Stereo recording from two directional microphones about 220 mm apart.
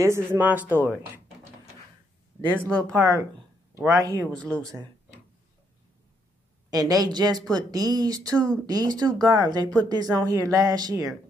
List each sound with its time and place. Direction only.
0.0 s speech: 10° right (ahead or behind)
3.0 s speech: 15° right (ahead or behind)
4.4 s speech: 5° left (ahead or behind)
6.7 s speech: 15° right (ahead or behind)